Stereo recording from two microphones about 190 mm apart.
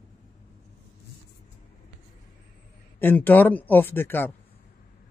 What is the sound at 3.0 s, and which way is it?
Speech, 10° left (ahead or behind).